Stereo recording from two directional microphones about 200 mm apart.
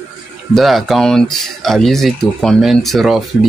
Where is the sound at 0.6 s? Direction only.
Centre (ahead or behind).